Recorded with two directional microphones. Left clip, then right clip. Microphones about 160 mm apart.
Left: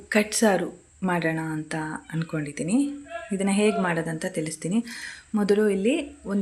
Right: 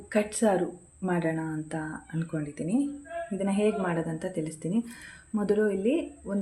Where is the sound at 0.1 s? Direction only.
10° left (ahead or behind).